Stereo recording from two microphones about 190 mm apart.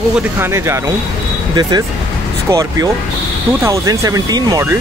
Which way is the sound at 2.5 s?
15° right (ahead or behind).